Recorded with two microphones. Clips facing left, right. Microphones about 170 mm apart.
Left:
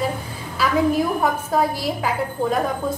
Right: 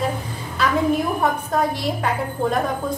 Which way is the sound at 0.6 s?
5° left (ahead or behind).